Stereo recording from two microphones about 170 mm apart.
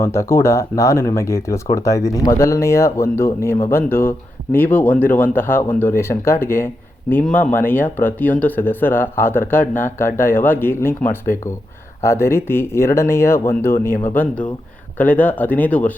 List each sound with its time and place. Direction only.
0.0 s speech: 15° left (ahead or behind)
12.0 s speech: 15° left (ahead or behind)